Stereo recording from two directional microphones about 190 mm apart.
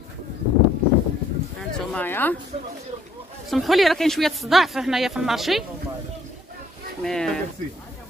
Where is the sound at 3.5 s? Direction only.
Centre (ahead or behind).